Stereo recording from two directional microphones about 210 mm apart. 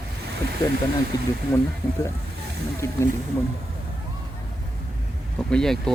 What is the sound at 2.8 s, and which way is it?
Speech, 15° left (ahead or behind).